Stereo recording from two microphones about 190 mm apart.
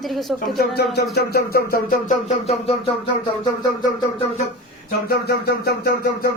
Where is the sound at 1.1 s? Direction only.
55° left (ahead or behind); by 2.7 s 35° left (ahead or behind).